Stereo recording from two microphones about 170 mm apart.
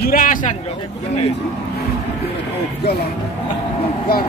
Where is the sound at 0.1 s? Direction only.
50° left (ahead or behind).